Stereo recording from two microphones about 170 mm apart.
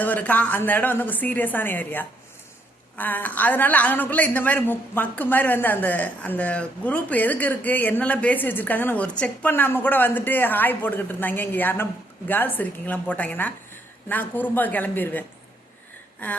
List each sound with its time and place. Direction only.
0.0 s a woman's voice: 10° left (ahead or behind)